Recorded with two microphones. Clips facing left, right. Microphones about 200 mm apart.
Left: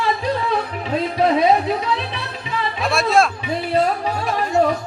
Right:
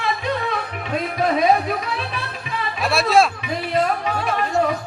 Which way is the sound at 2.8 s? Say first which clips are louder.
Right 1 dB; centre (ahead or behind).